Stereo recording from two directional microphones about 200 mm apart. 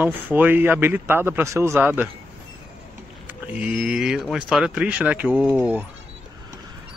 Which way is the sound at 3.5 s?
5° right (ahead or behind).